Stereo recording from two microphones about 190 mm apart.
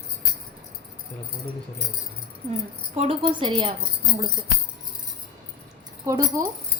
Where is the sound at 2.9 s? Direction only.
30° right (ahead or behind).